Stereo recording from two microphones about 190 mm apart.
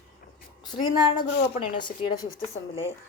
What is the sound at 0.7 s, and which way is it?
Speech, 20° left (ahead or behind).